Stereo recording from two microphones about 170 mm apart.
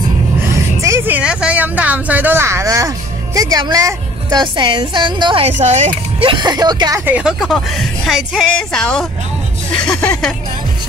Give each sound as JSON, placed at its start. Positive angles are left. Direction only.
{"t": 0.5, "sound": "a sound", "side_deg": -15}
{"t": 3.3, "sound": "a woman's voice", "side_deg": -20}
{"t": 5.6, "sound": "speech", "side_deg": -40}
{"t": 6.3, "sound": "a woman's voice", "side_deg": -25}
{"t": 7.1, "sound": "speech", "side_deg": -5}